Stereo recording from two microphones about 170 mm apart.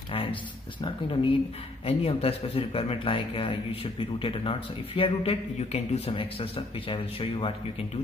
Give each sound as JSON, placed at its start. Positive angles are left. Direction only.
{"t": 0.1, "sound": "a man's voice", "side_deg": 30}